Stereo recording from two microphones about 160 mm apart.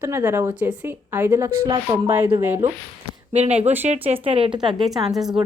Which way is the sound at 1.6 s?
30° right (ahead or behind).